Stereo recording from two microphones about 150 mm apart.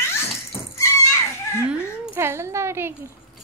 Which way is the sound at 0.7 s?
20° left (ahead or behind).